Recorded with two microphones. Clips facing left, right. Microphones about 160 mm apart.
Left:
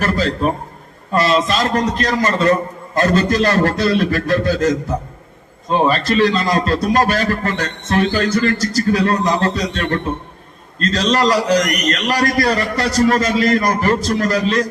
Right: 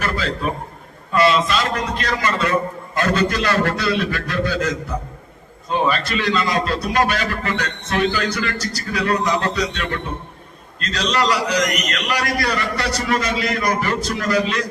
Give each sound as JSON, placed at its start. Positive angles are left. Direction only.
{"t": 0.0, "sound": "a man's voice", "side_deg": 40}